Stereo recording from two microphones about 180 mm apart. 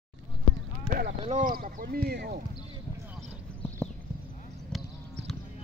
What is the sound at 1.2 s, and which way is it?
Speech, 45° right (ahead or behind).